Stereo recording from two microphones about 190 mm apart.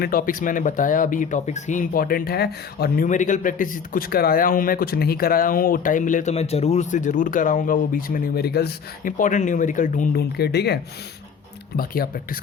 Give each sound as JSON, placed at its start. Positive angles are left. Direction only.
{"t": 0.0, "sound": "speech", "side_deg": 50}
{"t": 11.8, "sound": "speech", "side_deg": 50}